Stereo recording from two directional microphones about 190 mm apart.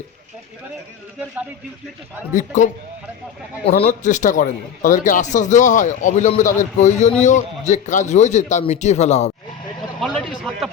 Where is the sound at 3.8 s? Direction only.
40° left (ahead or behind).